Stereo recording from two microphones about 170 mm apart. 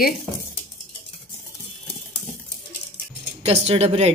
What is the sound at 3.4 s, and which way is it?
Speech, 35° right (ahead or behind).